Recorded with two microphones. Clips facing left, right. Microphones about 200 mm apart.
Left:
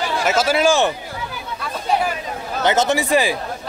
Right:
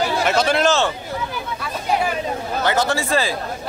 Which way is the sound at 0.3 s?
5° left (ahead or behind).